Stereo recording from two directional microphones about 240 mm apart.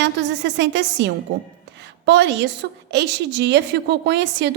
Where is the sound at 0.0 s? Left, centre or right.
Right.